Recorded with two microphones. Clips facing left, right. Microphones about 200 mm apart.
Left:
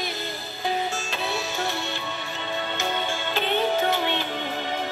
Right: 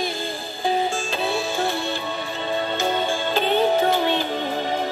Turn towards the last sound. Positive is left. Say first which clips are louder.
# right 5 dB
turn(degrees=-35)  # may be behind; listen again after turning